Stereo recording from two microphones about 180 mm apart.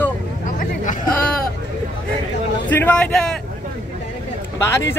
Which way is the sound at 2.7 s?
10° left (ahead or behind).